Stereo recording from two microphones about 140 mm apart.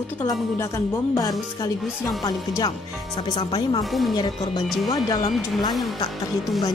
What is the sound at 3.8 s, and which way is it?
Speech, centre (ahead or behind).